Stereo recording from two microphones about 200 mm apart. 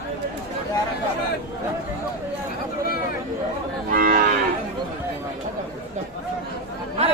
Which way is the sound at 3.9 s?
45° right (ahead or behind).